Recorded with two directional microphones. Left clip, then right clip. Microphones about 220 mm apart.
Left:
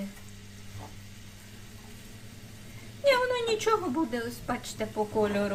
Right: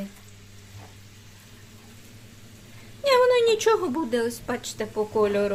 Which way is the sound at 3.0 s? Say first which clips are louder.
Right 6 dB; 45° right (ahead or behind).